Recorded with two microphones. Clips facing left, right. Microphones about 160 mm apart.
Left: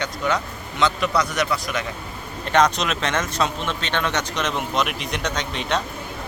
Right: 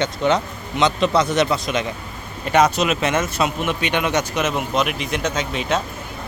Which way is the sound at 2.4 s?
10° right (ahead or behind).